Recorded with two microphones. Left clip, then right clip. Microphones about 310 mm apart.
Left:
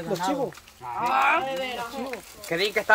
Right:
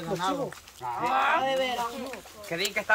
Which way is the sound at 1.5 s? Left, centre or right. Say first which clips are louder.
Right 3 dB; right.